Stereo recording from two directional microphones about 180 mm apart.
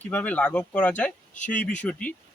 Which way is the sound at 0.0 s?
10° left (ahead or behind).